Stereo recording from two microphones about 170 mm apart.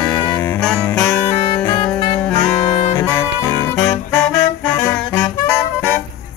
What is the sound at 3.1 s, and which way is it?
Music, 15° left (ahead or behind).